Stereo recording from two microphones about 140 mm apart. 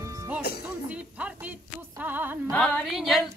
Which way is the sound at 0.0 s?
25° right (ahead or behind).